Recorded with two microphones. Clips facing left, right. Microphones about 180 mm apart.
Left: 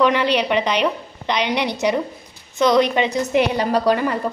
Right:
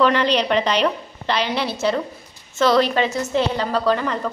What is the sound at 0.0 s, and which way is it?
A woman's voice, 10° left (ahead or behind).